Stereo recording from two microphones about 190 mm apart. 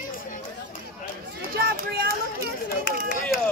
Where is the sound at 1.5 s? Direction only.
55° right (ahead or behind).